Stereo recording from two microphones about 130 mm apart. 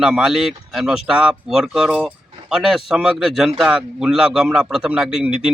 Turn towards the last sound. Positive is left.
turn(degrees=-5)  # may be behind; listen again after turning